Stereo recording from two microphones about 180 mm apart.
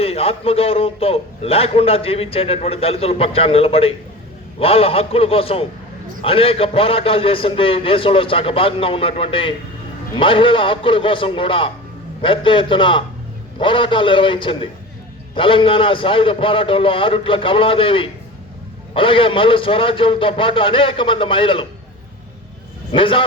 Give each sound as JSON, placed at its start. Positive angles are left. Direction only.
{"t": 0.0, "sound": "a man's voice", "side_deg": 30}
{"t": 22.9, "sound": "a man's voice", "side_deg": 30}